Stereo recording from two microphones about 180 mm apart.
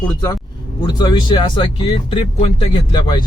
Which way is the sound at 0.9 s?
25° left (ahead or behind).